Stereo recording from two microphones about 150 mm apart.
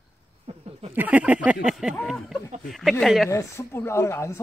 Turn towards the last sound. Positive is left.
turn(degrees=20)  # may be behind; listen again after turning